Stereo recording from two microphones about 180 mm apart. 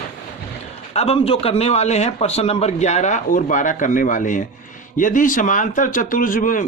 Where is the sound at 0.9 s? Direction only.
35° left (ahead or behind).